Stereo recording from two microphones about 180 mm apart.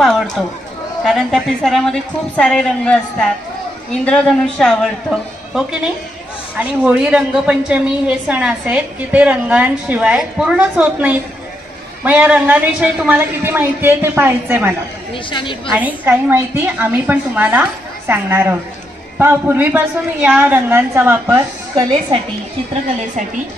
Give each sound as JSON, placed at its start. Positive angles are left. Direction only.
{"t": 0.0, "sound": "a woman's voice", "side_deg": 0}
{"t": 15.3, "sound": "a woman's voice", "side_deg": 25}
{"t": 15.7, "sound": "a woman's voice", "side_deg": -10}